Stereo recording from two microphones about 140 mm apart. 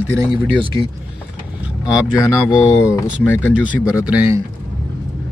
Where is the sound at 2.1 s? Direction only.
20° left (ahead or behind).